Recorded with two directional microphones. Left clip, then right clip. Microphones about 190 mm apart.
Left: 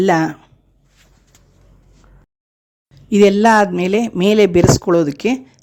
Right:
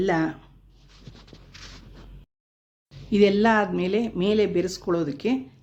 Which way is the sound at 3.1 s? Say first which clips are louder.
Left 9 dB; 45° left (ahead or behind).